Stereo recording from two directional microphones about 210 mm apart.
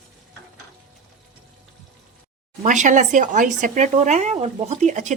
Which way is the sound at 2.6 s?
35° right (ahead or behind).